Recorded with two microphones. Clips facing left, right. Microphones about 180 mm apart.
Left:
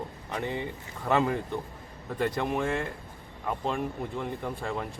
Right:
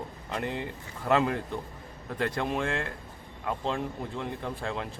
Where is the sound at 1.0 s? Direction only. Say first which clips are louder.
Even; centre (ahead or behind).